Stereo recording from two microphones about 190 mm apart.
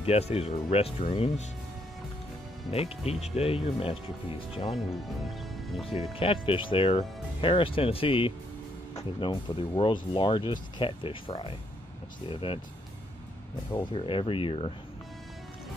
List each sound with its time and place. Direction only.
0.0 s speech: 30° left (ahead or behind)
2.7 s speech: 30° left (ahead or behind)
4.7 s speech: centre (ahead or behind)
6.1 s speech: 30° left (ahead or behind)
13.9 s speech: 30° left (ahead or behind)